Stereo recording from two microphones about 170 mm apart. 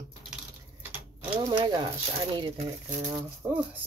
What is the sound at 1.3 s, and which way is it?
Speech, 30° right (ahead or behind).